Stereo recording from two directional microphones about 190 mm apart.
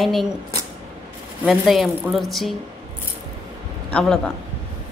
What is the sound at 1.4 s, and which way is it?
A woman's voice, centre (ahead or behind).